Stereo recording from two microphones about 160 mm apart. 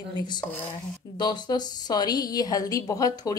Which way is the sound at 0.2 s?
25° left (ahead or behind).